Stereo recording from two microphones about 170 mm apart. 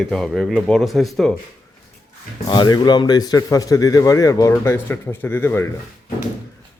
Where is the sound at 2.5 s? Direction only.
25° left (ahead or behind).